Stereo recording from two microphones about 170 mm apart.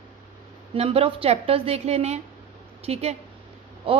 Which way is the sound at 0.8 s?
35° right (ahead or behind).